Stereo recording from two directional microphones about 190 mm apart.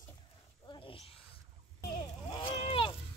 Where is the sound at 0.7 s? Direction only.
30° left (ahead or behind).